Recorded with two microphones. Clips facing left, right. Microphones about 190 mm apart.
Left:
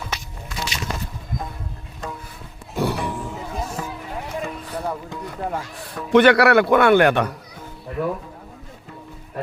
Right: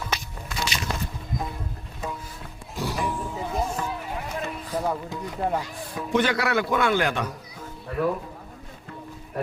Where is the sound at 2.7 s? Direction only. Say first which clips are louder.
Left 5 dB; 60° left (ahead or behind).